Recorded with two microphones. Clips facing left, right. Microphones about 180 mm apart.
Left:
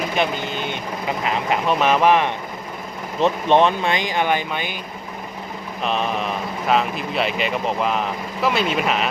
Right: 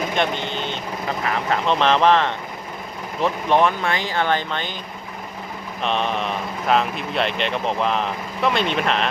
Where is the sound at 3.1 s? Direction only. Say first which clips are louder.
Left 3 dB; 20° left (ahead or behind).